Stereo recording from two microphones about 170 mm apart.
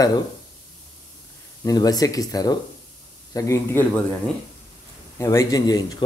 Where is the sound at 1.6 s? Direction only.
20° left (ahead or behind).